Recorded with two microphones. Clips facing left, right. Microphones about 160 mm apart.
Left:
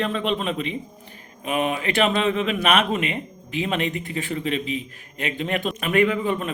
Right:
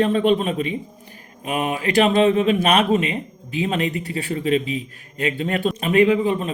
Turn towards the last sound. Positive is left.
turn(degrees=-35)  # may be behind; listen again after turning